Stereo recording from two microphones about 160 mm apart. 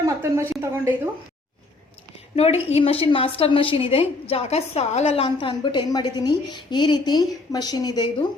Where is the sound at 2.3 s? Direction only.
40° left (ahead or behind).